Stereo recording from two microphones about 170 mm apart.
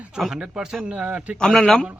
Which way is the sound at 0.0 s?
5° right (ahead or behind).